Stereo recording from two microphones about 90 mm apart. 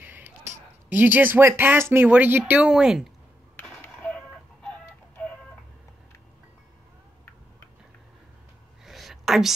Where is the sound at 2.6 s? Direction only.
10° right (ahead or behind).